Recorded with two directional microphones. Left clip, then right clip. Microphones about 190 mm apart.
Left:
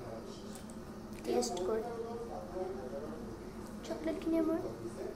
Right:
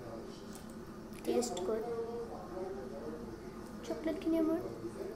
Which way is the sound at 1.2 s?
15° right (ahead or behind).